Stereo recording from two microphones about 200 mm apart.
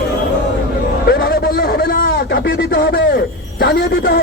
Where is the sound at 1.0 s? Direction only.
50° left (ahead or behind).